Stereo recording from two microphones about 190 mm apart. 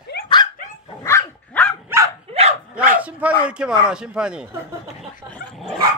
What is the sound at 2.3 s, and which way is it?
Dog, 35° right (ahead or behind).